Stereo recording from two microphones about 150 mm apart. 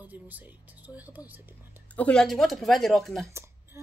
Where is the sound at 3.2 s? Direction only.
15° right (ahead or behind).